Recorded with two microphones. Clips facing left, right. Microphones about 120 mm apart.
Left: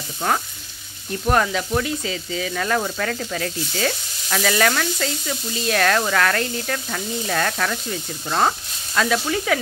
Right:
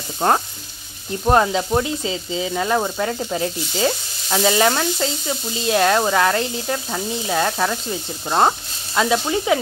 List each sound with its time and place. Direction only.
0.2 s frying: 35° right (ahead or behind)
1.2 s speech: 25° right (ahead or behind)